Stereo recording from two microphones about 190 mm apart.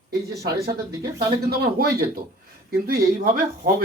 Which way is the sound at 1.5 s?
55° right (ahead or behind).